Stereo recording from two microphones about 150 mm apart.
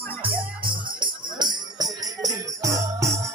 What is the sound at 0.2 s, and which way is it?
Music, 35° right (ahead or behind).